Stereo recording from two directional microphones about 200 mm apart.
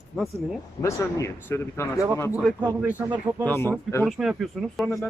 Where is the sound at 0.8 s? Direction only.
15° left (ahead or behind).